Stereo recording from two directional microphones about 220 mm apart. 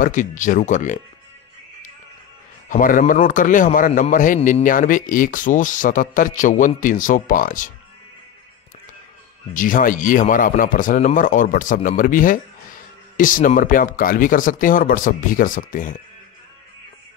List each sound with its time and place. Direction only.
0.0 s a man's voice: 35° left (ahead or behind)
2.7 s a man's voice: 35° left (ahead or behind)
9.5 s a man's voice: 35° left (ahead or behind)